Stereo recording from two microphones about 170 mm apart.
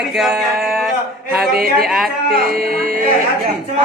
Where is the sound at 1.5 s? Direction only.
60° right (ahead or behind).